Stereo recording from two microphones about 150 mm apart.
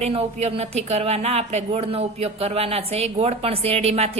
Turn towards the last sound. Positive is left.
turn(degrees=-45)  # may be behind; listen again after turning